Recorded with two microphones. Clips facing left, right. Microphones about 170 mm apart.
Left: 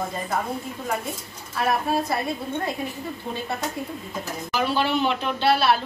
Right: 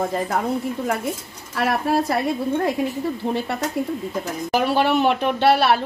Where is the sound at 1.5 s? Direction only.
80° right.